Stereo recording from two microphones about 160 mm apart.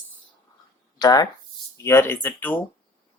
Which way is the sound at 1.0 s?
25° left (ahead or behind).